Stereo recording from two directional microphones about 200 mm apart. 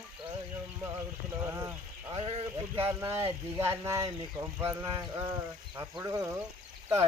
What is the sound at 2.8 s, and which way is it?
Speech, 10° right (ahead or behind).